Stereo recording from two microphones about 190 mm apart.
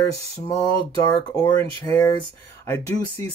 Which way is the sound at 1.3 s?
15° left (ahead or behind).